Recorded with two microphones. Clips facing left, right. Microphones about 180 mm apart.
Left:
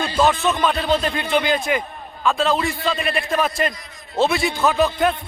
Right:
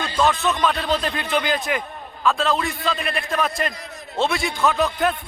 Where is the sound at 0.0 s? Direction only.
10° left (ahead or behind).